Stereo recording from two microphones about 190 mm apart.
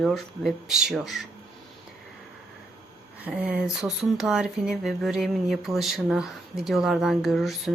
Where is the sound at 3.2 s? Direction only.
10° right (ahead or behind).